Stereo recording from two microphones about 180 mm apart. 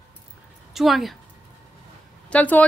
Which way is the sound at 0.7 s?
Centre (ahead or behind).